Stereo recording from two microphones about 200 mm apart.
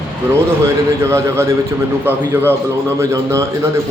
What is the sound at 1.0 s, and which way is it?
A man's voice, 15° right (ahead or behind).